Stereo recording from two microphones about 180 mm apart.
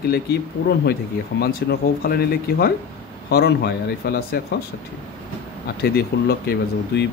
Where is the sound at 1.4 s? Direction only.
60° left (ahead or behind).